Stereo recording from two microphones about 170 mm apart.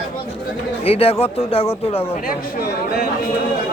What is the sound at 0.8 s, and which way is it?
Speech, 35° left (ahead or behind).